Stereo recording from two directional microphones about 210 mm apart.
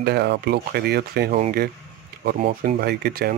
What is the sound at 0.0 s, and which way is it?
Speech, 50° right (ahead or behind).